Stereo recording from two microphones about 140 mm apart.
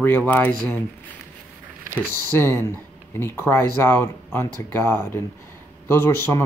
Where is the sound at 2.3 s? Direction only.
15° left (ahead or behind).